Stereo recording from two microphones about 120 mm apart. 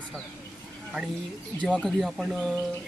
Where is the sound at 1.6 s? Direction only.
5° left (ahead or behind).